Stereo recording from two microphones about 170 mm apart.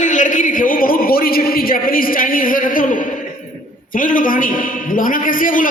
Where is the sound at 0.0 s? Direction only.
50° left (ahead or behind).